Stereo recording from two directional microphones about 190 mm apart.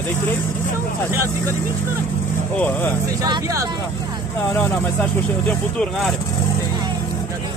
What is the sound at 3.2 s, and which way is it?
Speech, 20° right (ahead or behind).